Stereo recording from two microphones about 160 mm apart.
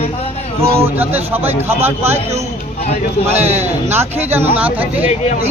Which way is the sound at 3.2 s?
15° right (ahead or behind).